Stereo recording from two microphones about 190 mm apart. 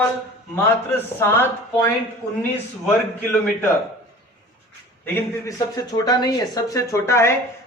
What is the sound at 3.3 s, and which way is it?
Speech, 5° left (ahead or behind).